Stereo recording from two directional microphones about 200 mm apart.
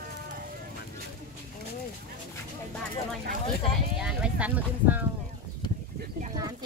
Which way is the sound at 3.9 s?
5° right (ahead or behind).